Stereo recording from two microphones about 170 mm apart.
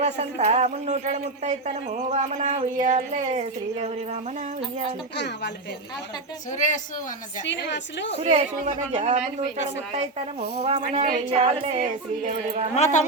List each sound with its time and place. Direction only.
0.0 s a man's voice: 40° right (ahead or behind)
5.1 s a woman's voice: 85° left
6.5 s speech: 50° left (ahead or behind)
7.4 s a woman's voice: 90° left
8.2 s a man's voice: 40° right (ahead or behind)
12.7 s speech: 45° left (ahead or behind)